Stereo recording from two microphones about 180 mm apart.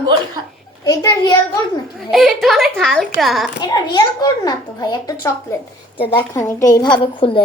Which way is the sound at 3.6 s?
20° left (ahead or behind).